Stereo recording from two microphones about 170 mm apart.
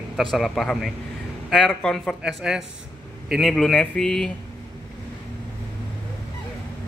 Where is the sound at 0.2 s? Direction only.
Centre (ahead or behind).